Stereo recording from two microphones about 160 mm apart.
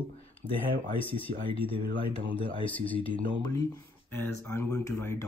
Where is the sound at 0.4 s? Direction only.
30° right (ahead or behind).